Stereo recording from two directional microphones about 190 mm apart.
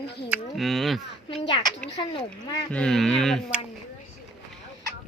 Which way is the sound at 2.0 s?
20° left (ahead or behind).